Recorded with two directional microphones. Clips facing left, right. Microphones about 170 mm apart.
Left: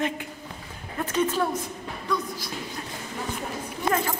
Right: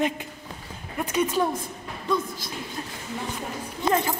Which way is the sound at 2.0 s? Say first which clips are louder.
Right 3 dB; 25° right (ahead or behind).